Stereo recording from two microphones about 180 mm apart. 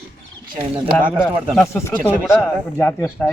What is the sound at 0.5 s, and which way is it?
Speech, 25° right (ahead or behind).